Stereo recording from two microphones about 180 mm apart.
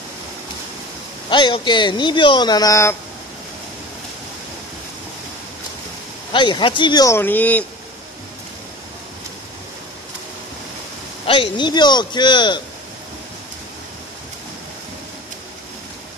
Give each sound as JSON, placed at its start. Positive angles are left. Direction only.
{"t": 1.3, "sound": "speech", "side_deg": 25}
{"t": 6.3, "sound": "speech", "side_deg": 25}
{"t": 11.2, "sound": "speech", "side_deg": 25}